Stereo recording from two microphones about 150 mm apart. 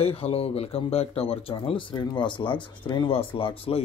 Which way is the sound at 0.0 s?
40° left (ahead or behind).